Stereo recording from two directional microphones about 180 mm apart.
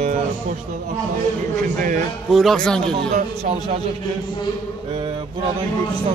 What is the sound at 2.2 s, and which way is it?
Speech, centre (ahead or behind).